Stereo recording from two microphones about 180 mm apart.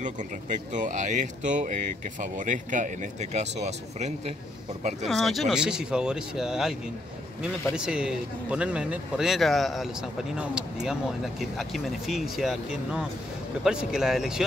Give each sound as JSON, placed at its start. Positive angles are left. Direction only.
{"t": 0.0, "sound": "speech", "side_deg": -45}
{"t": 5.0, "sound": "speech", "side_deg": 0}